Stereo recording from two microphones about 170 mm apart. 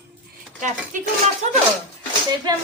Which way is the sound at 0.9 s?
50° right (ahead or behind).